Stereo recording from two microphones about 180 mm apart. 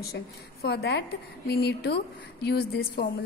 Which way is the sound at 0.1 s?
60° left (ahead or behind).